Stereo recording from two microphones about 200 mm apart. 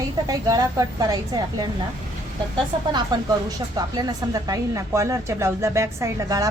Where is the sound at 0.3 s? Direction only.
20° right (ahead or behind).